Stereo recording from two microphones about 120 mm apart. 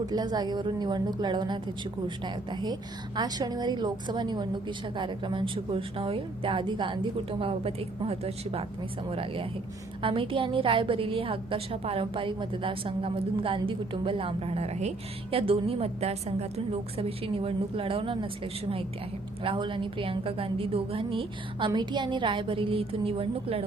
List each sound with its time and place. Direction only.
0.0 s a woman's voice: 35° right (ahead or behind)
19.4 s a woman's voice: 45° right (ahead or behind)
21.7 s a woman's voice: 35° right (ahead or behind); by 23.6 s 50° right (ahead or behind)